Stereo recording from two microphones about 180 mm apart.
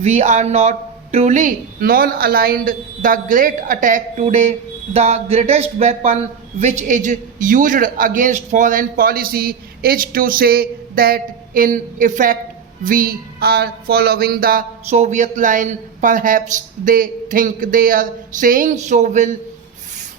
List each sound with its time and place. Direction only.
0.0 s a man's voice: 40° right (ahead or behind)
12.8 s a sound: 50° right (ahead or behind)
14.8 s a man's voice: 40° right (ahead or behind)